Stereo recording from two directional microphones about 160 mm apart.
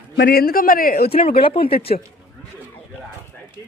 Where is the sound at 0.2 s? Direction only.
75° left (ahead or behind).